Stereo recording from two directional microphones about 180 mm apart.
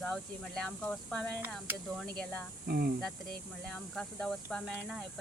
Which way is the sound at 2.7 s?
60° right (ahead or behind).